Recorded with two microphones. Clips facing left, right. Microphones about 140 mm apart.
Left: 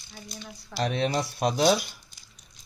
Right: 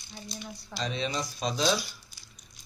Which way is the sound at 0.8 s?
60° left (ahead or behind).